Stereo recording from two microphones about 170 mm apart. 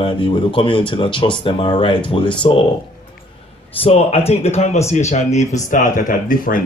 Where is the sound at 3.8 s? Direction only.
35° left (ahead or behind).